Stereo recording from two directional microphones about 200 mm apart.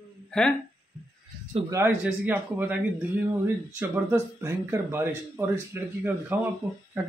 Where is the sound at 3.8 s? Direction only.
10° right (ahead or behind).